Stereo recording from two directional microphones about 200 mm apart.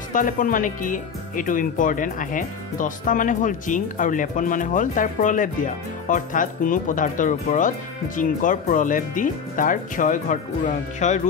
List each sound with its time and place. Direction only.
0.1 s speech: 40° left (ahead or behind)